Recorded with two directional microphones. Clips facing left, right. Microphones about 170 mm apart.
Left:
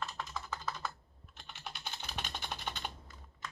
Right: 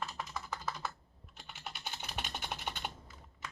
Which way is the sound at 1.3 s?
5° right (ahead or behind).